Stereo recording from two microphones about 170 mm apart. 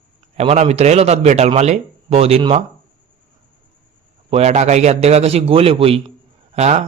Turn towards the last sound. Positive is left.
turn(degrees=-40)  # may be behind; listen again after turning